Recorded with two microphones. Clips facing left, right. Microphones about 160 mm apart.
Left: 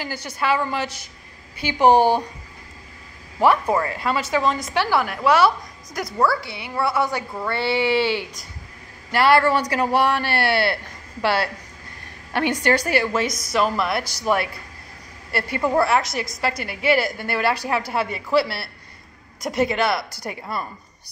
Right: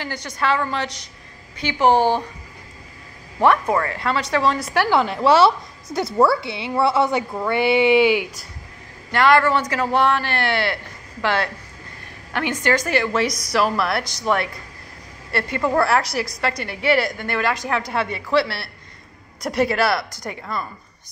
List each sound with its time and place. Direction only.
0.0 s speech: 10° left (ahead or behind)
3.3 s a woman's voice: 10° left (ahead or behind)
4.7 s a woman's voice: 25° right (ahead or behind)
9.1 s a woman's voice: 10° left (ahead or behind)
12.6 s a woman's voice: 35° left (ahead or behind)
13.0 s a woman's voice: 5° left (ahead or behind)
15.6 s a woman's voice: 5° left (ahead or behind)
20.2 s speech: 10° left (ahead or behind)